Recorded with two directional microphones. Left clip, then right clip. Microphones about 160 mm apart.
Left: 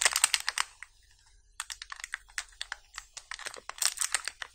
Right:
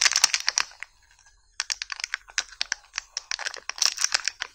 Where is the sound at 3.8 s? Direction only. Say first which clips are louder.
Right 8 dB; 20° right (ahead or behind).